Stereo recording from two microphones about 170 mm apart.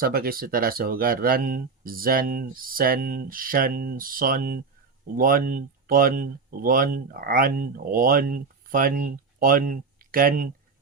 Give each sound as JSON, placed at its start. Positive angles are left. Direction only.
{"t": 0.0, "sound": "speech", "side_deg": -60}